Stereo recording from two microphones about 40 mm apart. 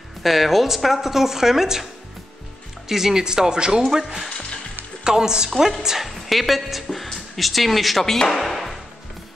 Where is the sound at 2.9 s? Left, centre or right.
Centre.